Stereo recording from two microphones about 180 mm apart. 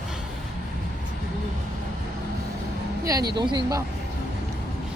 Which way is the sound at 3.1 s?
20° right (ahead or behind).